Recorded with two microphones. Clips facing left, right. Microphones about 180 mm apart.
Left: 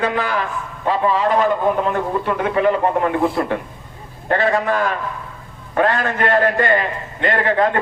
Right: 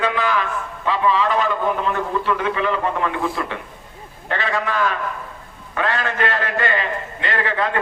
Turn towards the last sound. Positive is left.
turn(degrees=45)  # may be behind; listen again after turning